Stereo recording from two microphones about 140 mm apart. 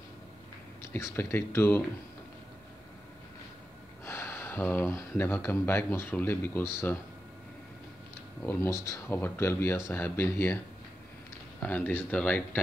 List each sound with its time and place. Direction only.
0.9 s speech: 20° left (ahead or behind)
4.0 s speech: 20° left (ahead or behind)
8.4 s speech: 15° left (ahead or behind)
11.6 s speech: 15° left (ahead or behind)